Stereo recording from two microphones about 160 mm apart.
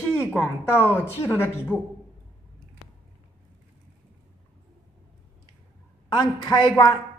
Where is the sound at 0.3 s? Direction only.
10° left (ahead or behind).